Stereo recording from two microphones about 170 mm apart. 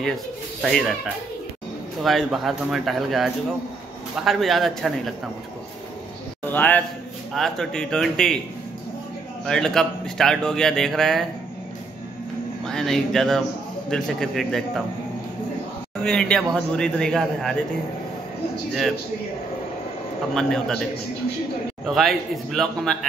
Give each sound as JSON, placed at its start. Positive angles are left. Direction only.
{"t": 0.6, "sound": "speech", "side_deg": 0}
{"t": 6.4, "sound": "a man's voice", "side_deg": 10}
{"t": 9.5, "sound": "speech", "side_deg": 5}
{"t": 12.6, "sound": "speech", "side_deg": 5}
{"t": 16.0, "sound": "speech", "side_deg": 5}
{"t": 18.7, "sound": "speech", "side_deg": 0}
{"t": 20.3, "sound": "speech", "side_deg": 5}
{"t": 21.8, "sound": "speech", "side_deg": 0}